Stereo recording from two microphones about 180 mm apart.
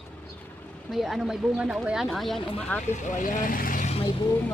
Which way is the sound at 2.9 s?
45° left (ahead or behind).